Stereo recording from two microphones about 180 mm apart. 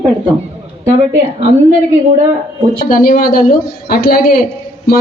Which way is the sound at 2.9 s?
50° left (ahead or behind).